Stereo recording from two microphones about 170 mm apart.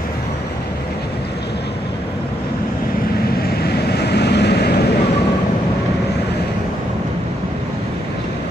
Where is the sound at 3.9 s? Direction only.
75° left (ahead or behind).